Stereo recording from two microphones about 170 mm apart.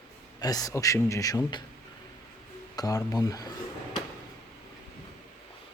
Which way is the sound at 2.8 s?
20° left (ahead or behind).